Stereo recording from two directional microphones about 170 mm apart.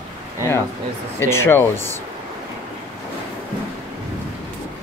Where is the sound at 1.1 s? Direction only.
15° left (ahead or behind).